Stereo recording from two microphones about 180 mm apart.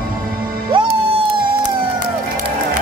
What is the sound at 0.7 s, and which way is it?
Music, 30° right (ahead or behind).